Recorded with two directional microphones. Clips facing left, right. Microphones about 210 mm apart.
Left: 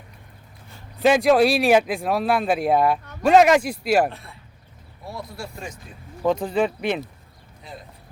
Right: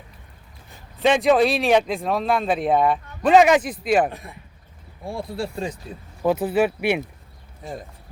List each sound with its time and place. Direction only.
1.0 s speech: 5° left (ahead or behind)
4.1 s speech: 15° right (ahead or behind)
5.0 s speech: 30° right (ahead or behind)
6.2 s speech: 5° right (ahead or behind)
7.6 s speech: 50° right (ahead or behind)